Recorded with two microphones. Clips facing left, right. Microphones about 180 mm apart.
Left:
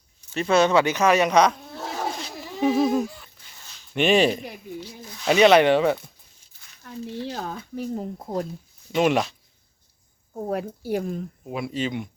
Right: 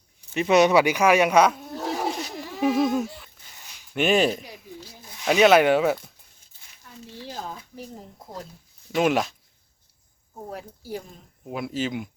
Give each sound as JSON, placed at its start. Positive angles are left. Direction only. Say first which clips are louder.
{"t": 0.3, "sound": "speech", "louder": "right 1 dB", "side_deg": -15}
{"t": 3.6, "sound": "a sound", "louder": "left 2 dB", "side_deg": -10}
{"t": 5.2, "sound": "speech", "louder": "left 1 dB", "side_deg": -5}
{"t": 6.8, "sound": "speech", "louder": "left 10 dB", "side_deg": 75}
{"t": 7.2, "sound": "speech", "louder": "left 2 dB", "side_deg": 65}
{"t": 8.9, "sound": "speech", "louder": "left 1 dB", "side_deg": 0}
{"t": 10.5, "sound": "speech", "louder": "left 9 dB", "side_deg": 65}
{"t": 11.4, "sound": "speech", "louder": "even", "side_deg": 0}